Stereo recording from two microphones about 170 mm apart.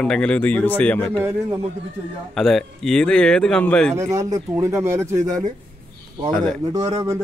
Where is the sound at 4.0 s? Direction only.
20° right (ahead or behind).